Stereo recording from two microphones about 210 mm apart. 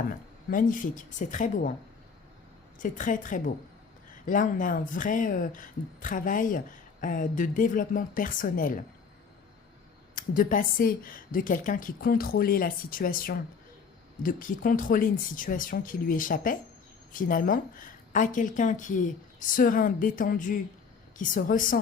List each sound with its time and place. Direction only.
0.5 s speech: 40° left (ahead or behind)
2.7 s speech: 40° left (ahead or behind)
10.2 s a woman's voice: 40° left (ahead or behind)